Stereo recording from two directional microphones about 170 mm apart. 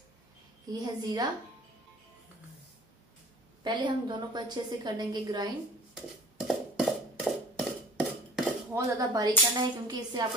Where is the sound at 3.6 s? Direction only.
25° right (ahead or behind).